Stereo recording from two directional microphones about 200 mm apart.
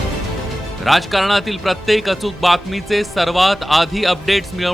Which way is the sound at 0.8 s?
Centre (ahead or behind).